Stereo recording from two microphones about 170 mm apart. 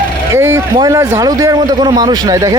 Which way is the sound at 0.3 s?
15° right (ahead or behind).